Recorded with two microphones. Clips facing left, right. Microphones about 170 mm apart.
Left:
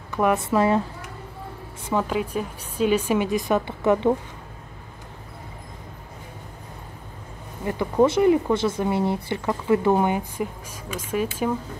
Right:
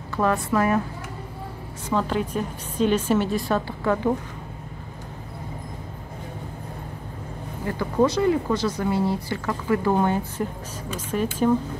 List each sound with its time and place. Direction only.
0.1 s speech: 20° left (ahead or behind)
2.0 s a woman's voice: 10° left (ahead or behind)
7.6 s a woman's voice: 20° left (ahead or behind)